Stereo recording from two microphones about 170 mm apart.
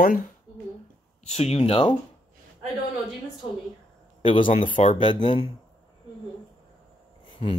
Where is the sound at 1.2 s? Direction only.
40° left (ahead or behind).